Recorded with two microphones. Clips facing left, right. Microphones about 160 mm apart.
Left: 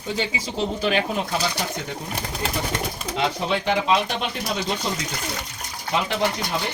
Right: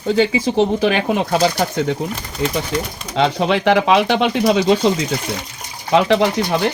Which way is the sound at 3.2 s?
80° right.